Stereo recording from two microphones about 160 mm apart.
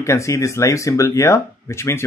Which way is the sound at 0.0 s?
20° left (ahead or behind).